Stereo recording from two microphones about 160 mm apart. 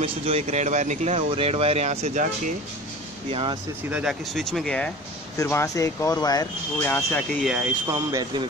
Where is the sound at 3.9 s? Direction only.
Centre (ahead or behind).